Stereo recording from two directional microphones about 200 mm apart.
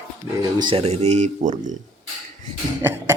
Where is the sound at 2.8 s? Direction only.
15° right (ahead or behind).